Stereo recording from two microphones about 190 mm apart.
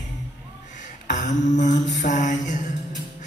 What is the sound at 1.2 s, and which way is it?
Mantra, 40° left (ahead or behind).